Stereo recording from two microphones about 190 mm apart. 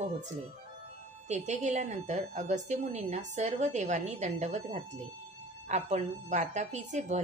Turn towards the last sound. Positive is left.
turn(degrees=-40)  # may be behind; listen again after turning